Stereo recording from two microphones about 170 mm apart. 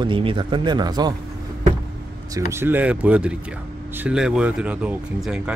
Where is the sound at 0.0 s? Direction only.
30° right (ahead or behind).